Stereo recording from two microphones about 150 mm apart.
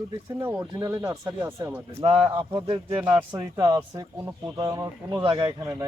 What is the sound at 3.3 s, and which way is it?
Speech, 20° right (ahead or behind).